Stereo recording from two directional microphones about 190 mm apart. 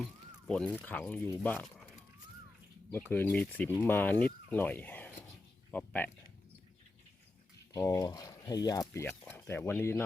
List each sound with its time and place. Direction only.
0.4 s speech: 5° left (ahead or behind)
1.6 s a sound: centre (ahead or behind)
2.9 s speech: 10° left (ahead or behind)
7.7 s speech: 20° left (ahead or behind)